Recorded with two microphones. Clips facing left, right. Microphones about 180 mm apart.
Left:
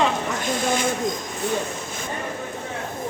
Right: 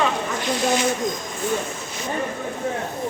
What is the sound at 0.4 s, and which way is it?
Speech, 50° left (ahead or behind).